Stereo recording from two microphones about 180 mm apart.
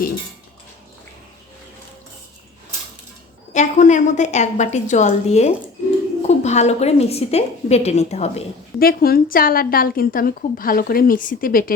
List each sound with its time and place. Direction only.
3.5 s a woman's voice: 40° left (ahead or behind)
8.8 s a woman's voice: 55° left (ahead or behind)